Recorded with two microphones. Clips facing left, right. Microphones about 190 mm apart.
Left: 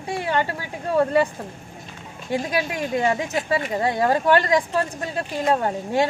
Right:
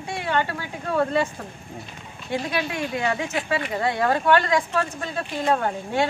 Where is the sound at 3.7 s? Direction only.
15° left (ahead or behind).